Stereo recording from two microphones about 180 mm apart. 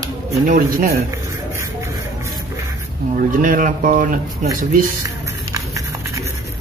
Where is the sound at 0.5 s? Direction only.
50° right (ahead or behind).